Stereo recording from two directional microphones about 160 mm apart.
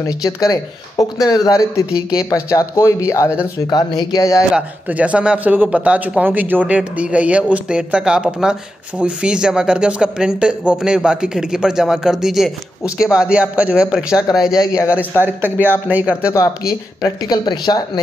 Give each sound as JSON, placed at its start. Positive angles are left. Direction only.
{"t": 0.0, "sound": "speech", "side_deg": 20}
{"t": 1.9, "sound": "speech", "side_deg": -5}
{"t": 2.1, "sound": "speech", "side_deg": 20}
{"t": 4.6, "sound": "speech", "side_deg": -10}
{"t": 14.4, "sound": "speech", "side_deg": 20}
{"t": 15.0, "sound": "speech", "side_deg": -10}
{"t": 16.3, "sound": "speech", "side_deg": 20}